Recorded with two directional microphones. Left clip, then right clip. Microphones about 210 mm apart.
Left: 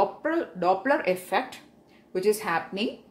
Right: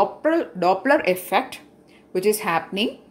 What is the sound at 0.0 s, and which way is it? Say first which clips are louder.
Speech: right 5 dB; 25° right (ahead or behind).